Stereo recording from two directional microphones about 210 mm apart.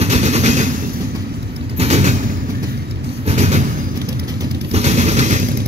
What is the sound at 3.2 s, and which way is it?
Train, 30° right (ahead or behind).